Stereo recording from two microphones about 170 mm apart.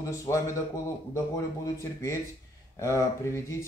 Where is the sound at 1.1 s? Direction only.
15° left (ahead or behind).